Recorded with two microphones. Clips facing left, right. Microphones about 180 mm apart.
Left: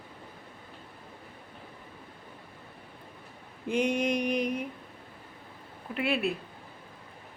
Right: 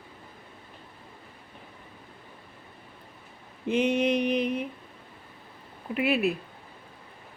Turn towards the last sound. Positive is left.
turn(degrees=-20)  # may be behind; listen again after turning